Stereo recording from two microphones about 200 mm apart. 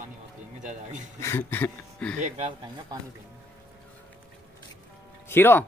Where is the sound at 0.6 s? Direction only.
40° right (ahead or behind).